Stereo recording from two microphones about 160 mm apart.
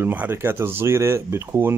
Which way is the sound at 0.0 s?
10° right (ahead or behind).